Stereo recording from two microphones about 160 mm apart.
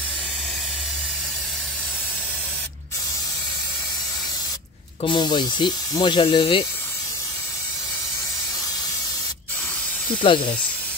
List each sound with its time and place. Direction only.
5.0 s speech: 30° left (ahead or behind)
10.2 s speech: 30° left (ahead or behind)